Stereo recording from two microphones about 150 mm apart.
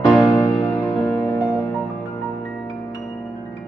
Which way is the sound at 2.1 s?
20° left (ahead or behind).